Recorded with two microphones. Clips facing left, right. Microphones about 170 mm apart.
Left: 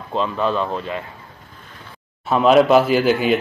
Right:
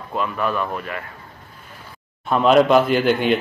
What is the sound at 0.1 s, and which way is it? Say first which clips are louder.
Speech: left 3 dB; 25° left (ahead or behind).